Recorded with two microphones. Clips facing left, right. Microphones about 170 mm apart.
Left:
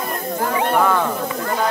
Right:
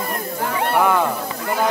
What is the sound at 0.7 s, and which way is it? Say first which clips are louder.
Speech: right 1 dB; 15° right (ahead or behind).